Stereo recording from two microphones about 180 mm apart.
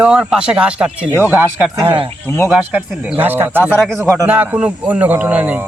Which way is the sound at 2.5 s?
10° right (ahead or behind).